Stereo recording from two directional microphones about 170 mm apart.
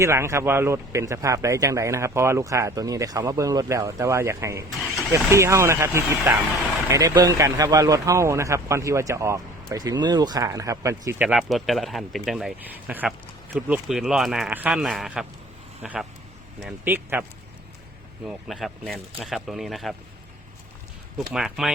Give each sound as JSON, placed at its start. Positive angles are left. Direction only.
{"t": 0.0, "sound": "speech", "side_deg": -15}
{"t": 11.3, "sound": "speech", "side_deg": 0}
{"t": 18.3, "sound": "speech", "side_deg": 0}
{"t": 21.2, "sound": "speech", "side_deg": 0}